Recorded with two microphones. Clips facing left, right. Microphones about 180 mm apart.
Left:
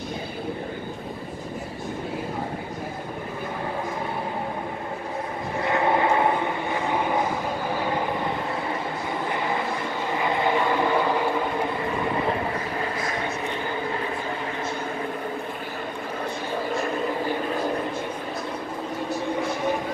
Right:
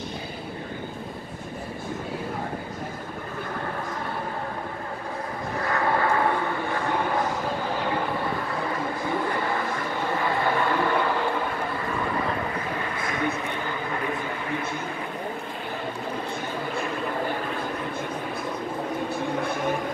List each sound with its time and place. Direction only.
5.6 s vehicle: 20° left (ahead or behind)
10.2 s vehicle: 15° left (ahead or behind)
13.0 s vehicle: 35° left (ahead or behind)